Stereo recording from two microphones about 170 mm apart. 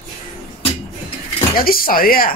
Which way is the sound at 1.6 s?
60° left (ahead or behind).